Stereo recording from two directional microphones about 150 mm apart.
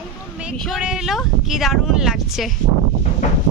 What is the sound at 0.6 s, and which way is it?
Speech, centre (ahead or behind).